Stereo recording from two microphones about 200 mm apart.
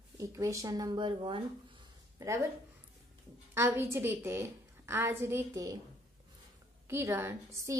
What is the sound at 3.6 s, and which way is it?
A woman's voice, 10° right (ahead or behind).